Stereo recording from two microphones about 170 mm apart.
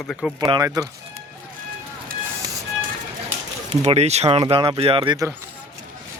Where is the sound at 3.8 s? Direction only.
40° right (ahead or behind).